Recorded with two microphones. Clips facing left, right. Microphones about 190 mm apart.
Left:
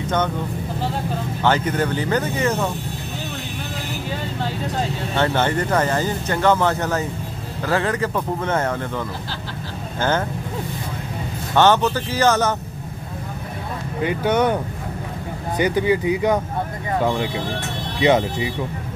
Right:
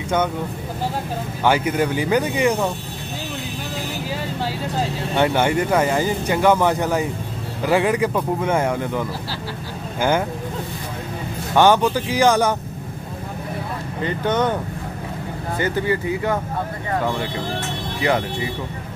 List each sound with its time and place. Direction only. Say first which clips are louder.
1.4 s speech: right 1 dB; 10° right (ahead or behind)
4.5 s speech: left 1 dB; 10° right (ahead or behind)
11.5 s speech: right 1 dB; 10° right (ahead or behind)
14.0 s speech: left 2 dB; 10° left (ahead or behind)
18.0 s speech: left 4 dB; 20° left (ahead or behind)